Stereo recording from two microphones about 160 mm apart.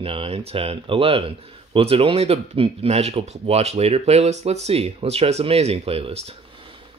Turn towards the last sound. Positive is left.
turn(degrees=-40)  # may be behind; listen again after turning